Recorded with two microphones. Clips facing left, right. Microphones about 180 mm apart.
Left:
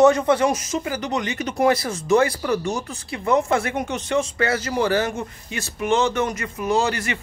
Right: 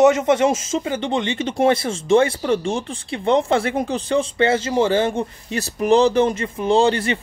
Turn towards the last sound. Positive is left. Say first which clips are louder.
# right 5 dB
turn(degrees=-30)  # may be behind; listen again after turning